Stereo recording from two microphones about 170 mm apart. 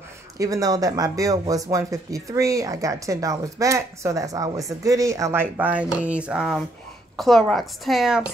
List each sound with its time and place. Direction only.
0.4 s a woman's voice: 20° right (ahead or behind); by 8.2 s centre (ahead or behind)